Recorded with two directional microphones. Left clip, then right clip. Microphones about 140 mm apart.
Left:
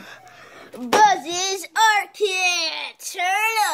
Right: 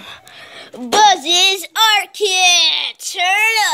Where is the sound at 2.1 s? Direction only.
25° right (ahead or behind).